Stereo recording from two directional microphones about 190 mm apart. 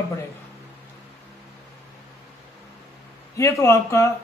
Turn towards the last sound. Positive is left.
turn(degrees=15)  # may be behind; listen again after turning